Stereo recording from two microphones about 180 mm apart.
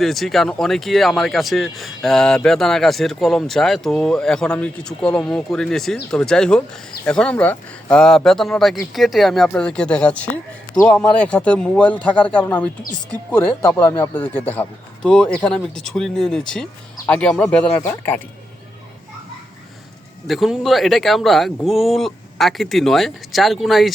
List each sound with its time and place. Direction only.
0.0 s speech: centre (ahead or behind)
20.2 s speech: centre (ahead or behind)